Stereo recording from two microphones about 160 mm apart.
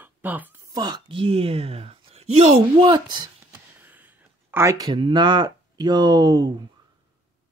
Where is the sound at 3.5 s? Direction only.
10° right (ahead or behind); by 6.7 s 30° right (ahead or behind).